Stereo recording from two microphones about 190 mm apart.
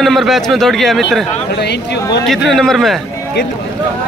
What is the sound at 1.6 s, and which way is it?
Speech, 60° left (ahead or behind).